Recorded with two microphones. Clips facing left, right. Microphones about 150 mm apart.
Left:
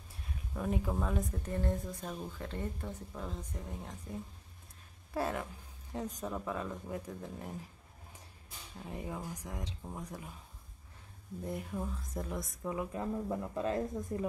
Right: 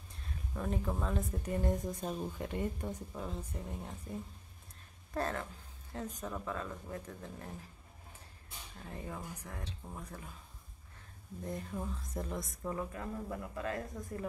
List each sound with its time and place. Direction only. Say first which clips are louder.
0.6 s speech: left 2 dB; 5° left (ahead or behind)
1.4 s speech: right 1 dB; 15° right (ahead or behind)
5.1 s speech: left 1 dB; 10° left (ahead or behind)
8.7 s speech: left 3 dB; 15° left (ahead or behind)
11.4 s speech: left 1 dB; 5° left (ahead or behind)
12.9 s speech: left 5 dB; 25° left (ahead or behind)